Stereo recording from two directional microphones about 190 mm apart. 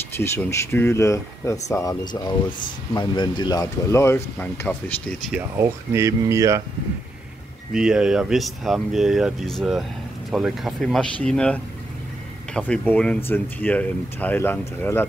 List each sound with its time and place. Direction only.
0.2 s speech: 15° left (ahead or behind)
5.3 s speech: 15° right (ahead or behind)
7.7 s speech: 5° right (ahead or behind)